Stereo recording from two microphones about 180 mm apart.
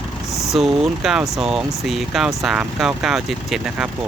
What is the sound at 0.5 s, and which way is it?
Speech, centre (ahead or behind).